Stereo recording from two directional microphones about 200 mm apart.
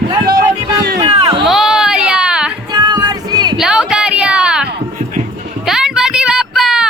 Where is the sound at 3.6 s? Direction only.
5° right (ahead or behind).